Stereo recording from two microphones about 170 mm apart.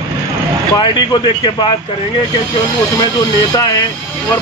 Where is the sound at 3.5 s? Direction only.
20° left (ahead or behind).